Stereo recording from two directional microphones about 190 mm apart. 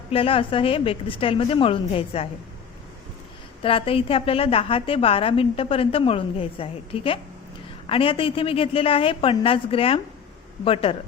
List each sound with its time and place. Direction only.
0.1 s a woman's voice: 30° left (ahead or behind)
3.6 s a woman's voice: 30° left (ahead or behind)